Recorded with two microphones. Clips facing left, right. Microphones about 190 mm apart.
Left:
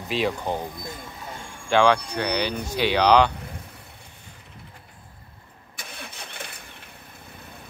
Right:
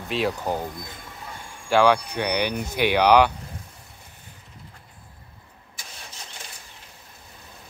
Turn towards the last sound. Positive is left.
turn(degrees=60)  # may be behind; listen again after turning